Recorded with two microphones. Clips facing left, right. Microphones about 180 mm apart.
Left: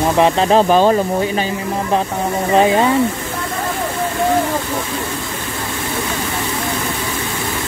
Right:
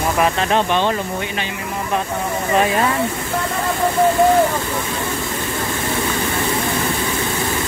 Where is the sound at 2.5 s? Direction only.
25° left (ahead or behind).